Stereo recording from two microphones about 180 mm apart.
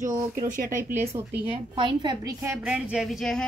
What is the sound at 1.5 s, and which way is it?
A woman's voice, 25° right (ahead or behind).